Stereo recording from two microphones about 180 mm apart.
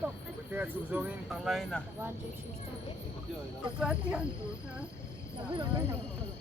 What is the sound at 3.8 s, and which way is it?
Speech, 5° right (ahead or behind).